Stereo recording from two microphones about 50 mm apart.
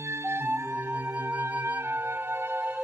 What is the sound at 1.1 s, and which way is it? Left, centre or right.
Music, right.